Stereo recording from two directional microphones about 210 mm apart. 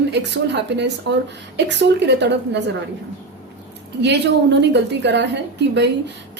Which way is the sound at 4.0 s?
55° right (ahead or behind).